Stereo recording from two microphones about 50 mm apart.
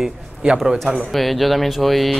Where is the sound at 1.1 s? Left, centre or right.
Centre.